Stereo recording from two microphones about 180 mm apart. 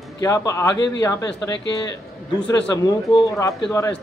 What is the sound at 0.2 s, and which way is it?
Speech, 15° left (ahead or behind).